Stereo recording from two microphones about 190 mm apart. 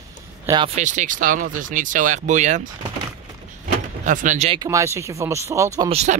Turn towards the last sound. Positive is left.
turn(degrees=-35)  # may be behind; listen again after turning